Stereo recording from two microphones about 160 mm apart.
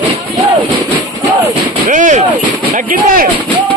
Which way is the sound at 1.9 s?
50° right (ahead or behind).